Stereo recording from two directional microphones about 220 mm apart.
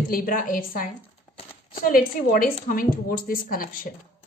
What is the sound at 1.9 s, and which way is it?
Speech, 40° left (ahead or behind).